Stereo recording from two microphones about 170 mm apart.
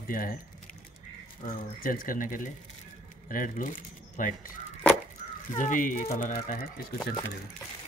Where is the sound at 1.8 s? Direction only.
55° left (ahead or behind).